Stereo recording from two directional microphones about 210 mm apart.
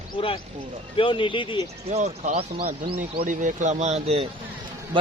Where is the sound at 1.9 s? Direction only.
30° right (ahead or behind).